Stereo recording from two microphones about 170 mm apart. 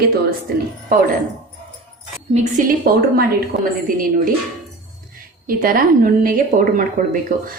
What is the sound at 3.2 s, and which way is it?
Speech, 55° right (ahead or behind).